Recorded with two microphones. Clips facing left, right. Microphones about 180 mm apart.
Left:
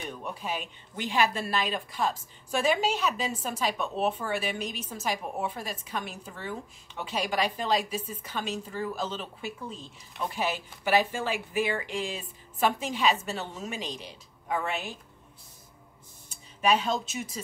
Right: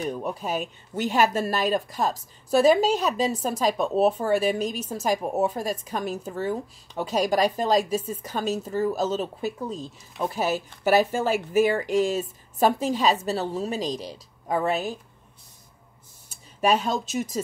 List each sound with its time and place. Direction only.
0.0 s a woman's voice: 40° right (ahead or behind)
16.3 s speech: 40° right (ahead or behind)